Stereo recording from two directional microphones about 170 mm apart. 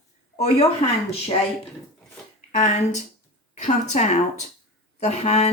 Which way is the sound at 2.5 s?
45° left (ahead or behind).